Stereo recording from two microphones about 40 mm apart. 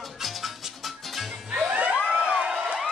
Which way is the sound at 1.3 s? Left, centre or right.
Centre.